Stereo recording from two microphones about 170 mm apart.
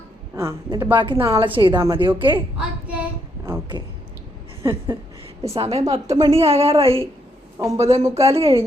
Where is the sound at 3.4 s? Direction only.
20° right (ahead or behind).